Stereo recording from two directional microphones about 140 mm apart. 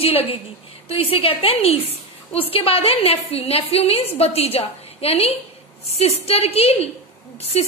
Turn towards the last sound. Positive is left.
turn(degrees=50)  # may be behind; listen again after turning